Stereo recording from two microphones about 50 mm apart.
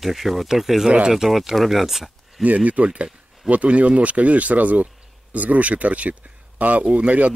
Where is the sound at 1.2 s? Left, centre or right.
Centre.